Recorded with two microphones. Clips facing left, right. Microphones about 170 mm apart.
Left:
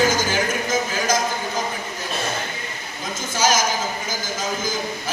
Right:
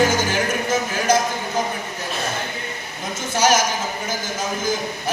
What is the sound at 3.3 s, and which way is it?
Speech, 65° right (ahead or behind).